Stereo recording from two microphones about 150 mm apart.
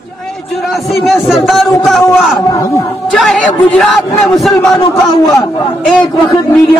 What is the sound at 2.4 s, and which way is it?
Speech, 25° left (ahead or behind).